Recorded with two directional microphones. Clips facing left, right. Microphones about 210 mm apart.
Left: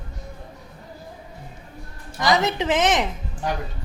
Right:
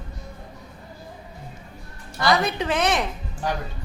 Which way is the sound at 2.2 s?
20° left (ahead or behind).